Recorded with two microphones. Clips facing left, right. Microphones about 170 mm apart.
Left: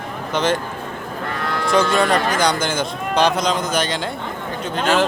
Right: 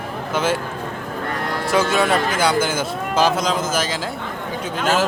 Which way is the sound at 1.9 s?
5° right (ahead or behind).